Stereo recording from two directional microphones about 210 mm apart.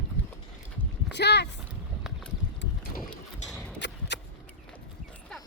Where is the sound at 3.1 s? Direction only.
5° left (ahead or behind).